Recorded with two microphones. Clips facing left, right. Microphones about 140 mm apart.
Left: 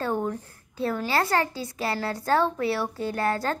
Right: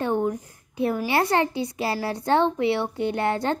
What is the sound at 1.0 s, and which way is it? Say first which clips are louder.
A woman's voice: right 2 dB; 20° right (ahead or behind).